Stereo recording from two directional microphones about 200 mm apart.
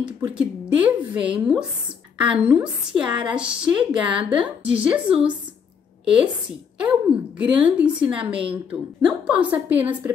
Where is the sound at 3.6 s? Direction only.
25° right (ahead or behind).